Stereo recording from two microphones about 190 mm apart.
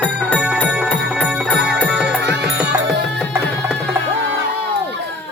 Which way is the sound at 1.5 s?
60° right (ahead or behind).